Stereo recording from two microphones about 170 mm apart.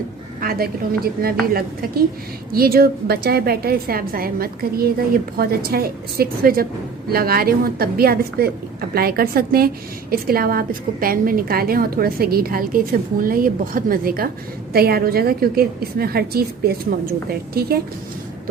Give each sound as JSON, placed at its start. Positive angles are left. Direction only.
{"t": 0.4, "sound": "a woman's voice", "side_deg": -60}
{"t": 2.5, "sound": "a woman's voice", "side_deg": -60}